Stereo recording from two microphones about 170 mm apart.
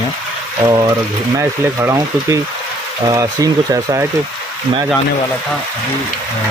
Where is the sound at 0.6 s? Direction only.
10° right (ahead or behind).